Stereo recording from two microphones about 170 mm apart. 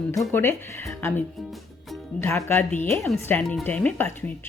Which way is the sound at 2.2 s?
15° left (ahead or behind).